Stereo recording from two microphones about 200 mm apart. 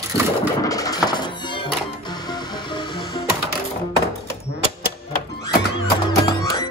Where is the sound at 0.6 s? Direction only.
15° left (ahead or behind).